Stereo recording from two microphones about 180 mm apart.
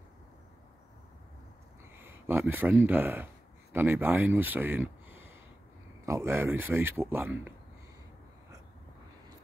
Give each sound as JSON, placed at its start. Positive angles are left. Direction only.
{"t": 2.0, "sound": "speech", "side_deg": -10}